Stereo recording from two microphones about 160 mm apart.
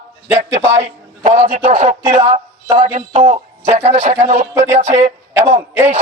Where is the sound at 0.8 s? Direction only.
45° right (ahead or behind).